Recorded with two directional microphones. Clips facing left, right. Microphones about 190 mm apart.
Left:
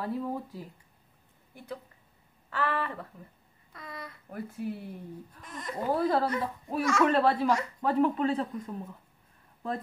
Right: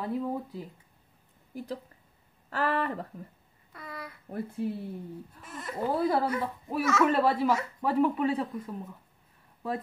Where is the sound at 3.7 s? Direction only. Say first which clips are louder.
Right 1 dB; 5° right (ahead or behind).